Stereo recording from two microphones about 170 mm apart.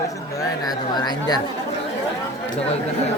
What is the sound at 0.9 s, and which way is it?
Speech, 25° left (ahead or behind).